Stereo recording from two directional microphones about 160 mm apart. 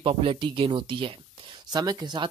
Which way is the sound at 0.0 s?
35° right (ahead or behind).